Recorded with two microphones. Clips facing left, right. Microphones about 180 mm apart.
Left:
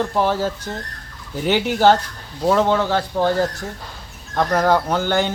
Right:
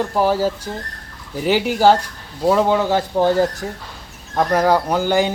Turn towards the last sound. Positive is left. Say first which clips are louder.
# right 2 dB
turn(degrees=-10)  # may be behind; listen again after turning